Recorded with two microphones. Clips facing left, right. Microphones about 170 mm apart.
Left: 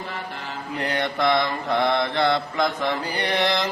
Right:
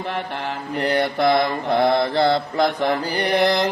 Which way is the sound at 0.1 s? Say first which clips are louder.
Right 7 dB; 70° right (ahead or behind).